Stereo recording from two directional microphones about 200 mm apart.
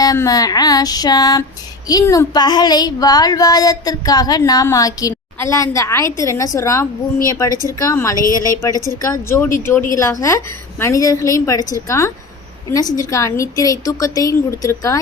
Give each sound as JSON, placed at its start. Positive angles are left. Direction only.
{"t": 0.0, "sound": "a woman's voice", "side_deg": 15}